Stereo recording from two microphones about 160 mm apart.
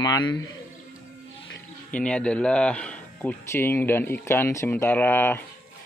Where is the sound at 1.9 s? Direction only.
5° left (ahead or behind).